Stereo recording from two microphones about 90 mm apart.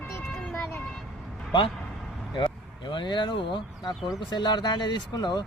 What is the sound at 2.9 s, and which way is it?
Speech, 60° left (ahead or behind).